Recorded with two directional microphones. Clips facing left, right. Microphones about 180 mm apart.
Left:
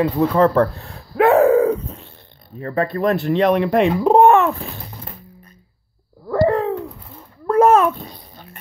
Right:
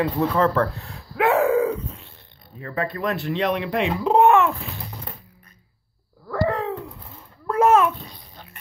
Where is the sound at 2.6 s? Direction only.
40° left (ahead or behind).